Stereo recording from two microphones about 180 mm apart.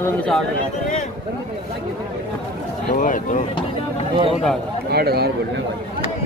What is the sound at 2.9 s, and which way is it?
Speech, 45° left (ahead or behind).